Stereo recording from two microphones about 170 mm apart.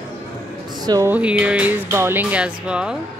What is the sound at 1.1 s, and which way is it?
Speech, 5° right (ahead or behind).